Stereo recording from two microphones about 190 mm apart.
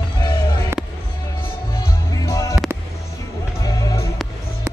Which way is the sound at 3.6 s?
20° left (ahead or behind).